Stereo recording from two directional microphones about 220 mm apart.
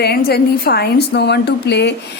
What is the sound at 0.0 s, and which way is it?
A woman's voice, 45° left (ahead or behind).